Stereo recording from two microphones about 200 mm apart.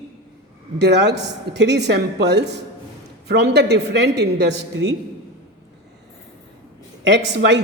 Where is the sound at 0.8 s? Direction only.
60° right (ahead or behind).